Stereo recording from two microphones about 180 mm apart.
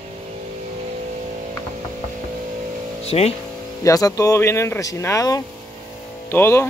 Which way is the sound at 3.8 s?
20° left (ahead or behind).